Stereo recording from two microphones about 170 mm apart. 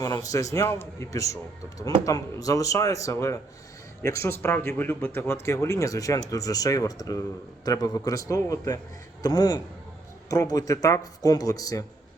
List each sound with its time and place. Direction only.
0.0 s speech: 20° left (ahead or behind)